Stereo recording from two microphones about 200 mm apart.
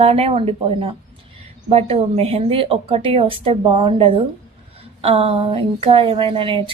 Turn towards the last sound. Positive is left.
turn(degrees=-25)  # may be behind; listen again after turning